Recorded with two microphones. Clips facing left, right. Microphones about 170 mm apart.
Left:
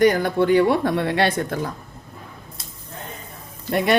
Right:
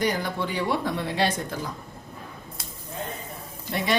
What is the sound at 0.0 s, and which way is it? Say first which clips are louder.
Speech: left 9 dB; 55° left (ahead or behind).